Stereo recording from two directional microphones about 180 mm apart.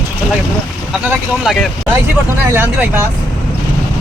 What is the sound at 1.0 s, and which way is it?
Speech, centre (ahead or behind).